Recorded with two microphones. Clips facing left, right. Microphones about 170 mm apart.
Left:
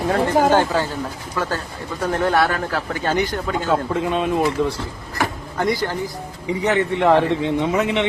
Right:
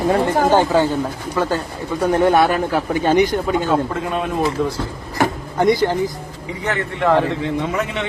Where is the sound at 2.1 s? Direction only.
20° right (ahead or behind).